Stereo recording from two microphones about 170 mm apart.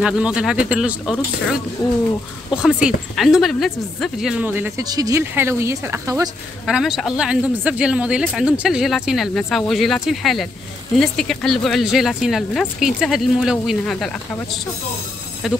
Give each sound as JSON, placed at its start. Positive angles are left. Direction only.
{"t": 0.0, "sound": "speech", "side_deg": -5}
{"t": 1.8, "sound": "speech", "side_deg": 25}
{"t": 2.5, "sound": "speech", "side_deg": -5}
{"t": 6.6, "sound": "speech", "side_deg": 0}